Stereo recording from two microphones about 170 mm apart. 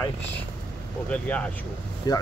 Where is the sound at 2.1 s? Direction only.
25° left (ahead or behind).